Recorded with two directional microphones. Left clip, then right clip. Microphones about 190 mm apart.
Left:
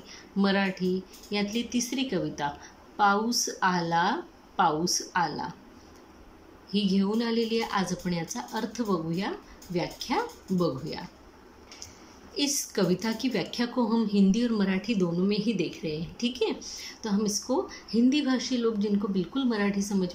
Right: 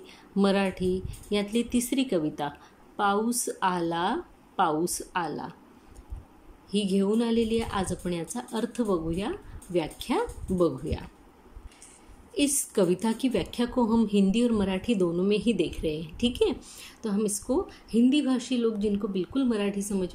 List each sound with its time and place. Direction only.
0.1 s a woman's voice: 20° right (ahead or behind)
6.7 s a woman's voice: 20° right (ahead or behind)
12.4 s a woman's voice: 15° right (ahead or behind)